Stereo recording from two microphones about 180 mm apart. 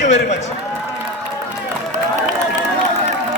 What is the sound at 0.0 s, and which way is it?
Speech, 40° left (ahead or behind).